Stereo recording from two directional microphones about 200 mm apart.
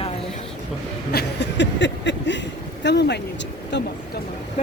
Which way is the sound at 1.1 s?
60° left (ahead or behind).